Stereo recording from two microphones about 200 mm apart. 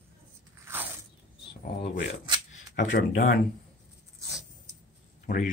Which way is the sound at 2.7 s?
60° left (ahead or behind).